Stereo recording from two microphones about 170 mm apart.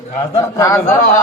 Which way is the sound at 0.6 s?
15° left (ahead or behind).